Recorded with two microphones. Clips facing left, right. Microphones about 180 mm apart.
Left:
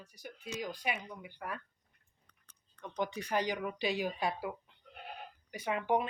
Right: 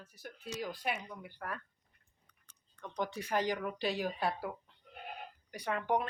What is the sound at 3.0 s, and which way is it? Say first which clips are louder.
Speech: even; centre (ahead or behind).